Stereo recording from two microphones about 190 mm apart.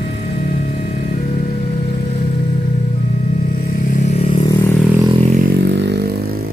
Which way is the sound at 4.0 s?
40° left (ahead or behind).